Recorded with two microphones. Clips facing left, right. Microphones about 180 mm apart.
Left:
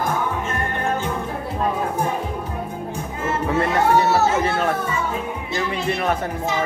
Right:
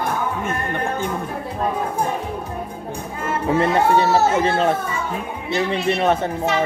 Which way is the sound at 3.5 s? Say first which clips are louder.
Right 1 dB; 20° right (ahead or behind).